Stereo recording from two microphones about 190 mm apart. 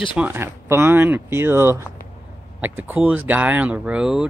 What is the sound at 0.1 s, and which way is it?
Speech, 10° right (ahead or behind).